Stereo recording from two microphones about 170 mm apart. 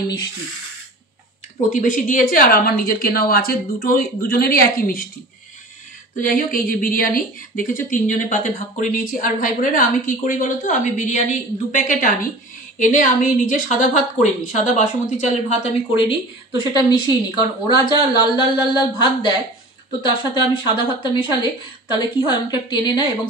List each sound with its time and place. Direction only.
1.7 s a woman's voice: 50° left (ahead or behind)
6.1 s speech: 55° left (ahead or behind)
16.0 s a woman's voice: 30° left (ahead or behind)